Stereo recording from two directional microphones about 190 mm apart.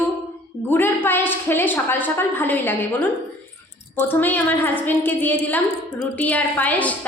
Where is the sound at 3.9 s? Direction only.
10° left (ahead or behind).